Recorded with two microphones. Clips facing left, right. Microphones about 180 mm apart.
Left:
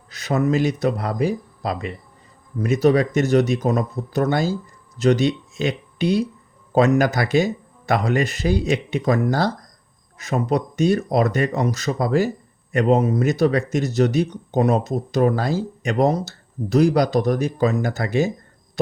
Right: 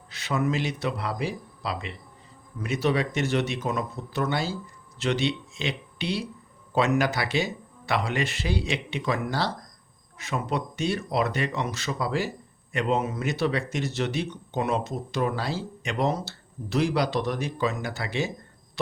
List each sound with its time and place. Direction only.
0.1 s speech: 40° left (ahead or behind)